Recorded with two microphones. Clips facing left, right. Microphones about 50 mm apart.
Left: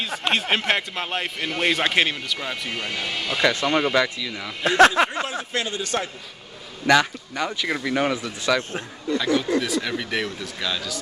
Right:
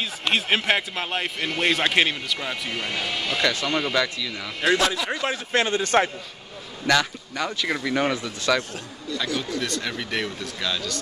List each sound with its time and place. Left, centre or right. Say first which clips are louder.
0.0 s a man's voice: left 1 dB; centre
3.3 s speech: left 4 dB; centre
4.6 s speech: left 6 dB; left
5.2 s a man's voice: right 3 dB; right
6.9 s speech: left 3 dB; centre
7.6 s speech: even; centre
9.1 s speech: left 6 dB; left
9.6 s a man's voice: left 3 dB; centre